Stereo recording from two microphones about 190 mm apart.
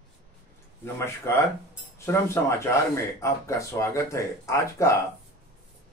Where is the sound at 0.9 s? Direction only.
15° left (ahead or behind).